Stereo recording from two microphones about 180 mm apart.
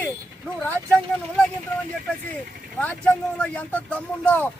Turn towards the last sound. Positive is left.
turn(degrees=5)  # may be behind; listen again after turning